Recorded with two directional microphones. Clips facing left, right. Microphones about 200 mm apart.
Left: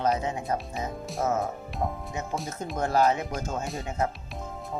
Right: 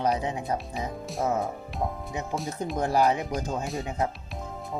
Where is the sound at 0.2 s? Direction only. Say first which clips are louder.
Even; 15° right (ahead or behind).